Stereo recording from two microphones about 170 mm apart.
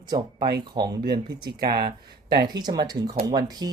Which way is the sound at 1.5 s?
65° right (ahead or behind).